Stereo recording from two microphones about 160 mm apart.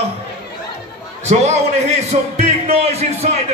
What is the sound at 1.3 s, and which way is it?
Music, 45° right (ahead or behind).